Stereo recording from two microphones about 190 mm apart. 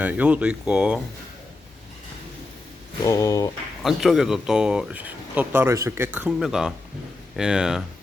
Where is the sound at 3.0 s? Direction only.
15° left (ahead or behind).